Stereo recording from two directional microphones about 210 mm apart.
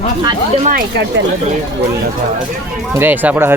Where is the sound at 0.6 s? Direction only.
50° right (ahead or behind).